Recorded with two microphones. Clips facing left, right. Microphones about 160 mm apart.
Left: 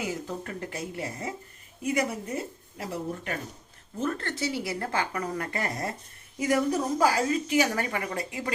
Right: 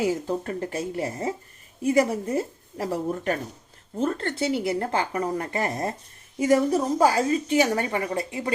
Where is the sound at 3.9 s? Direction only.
30° right (ahead or behind).